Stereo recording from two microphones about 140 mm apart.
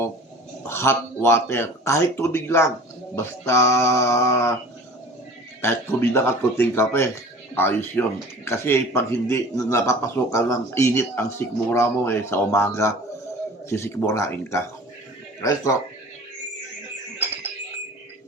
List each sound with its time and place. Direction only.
0.7 s a man's voice: 20° left (ahead or behind)
5.6 s a man's voice: 15° left (ahead or behind)